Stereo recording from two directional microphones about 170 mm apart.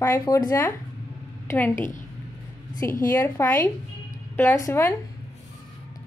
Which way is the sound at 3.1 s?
15° left (ahead or behind).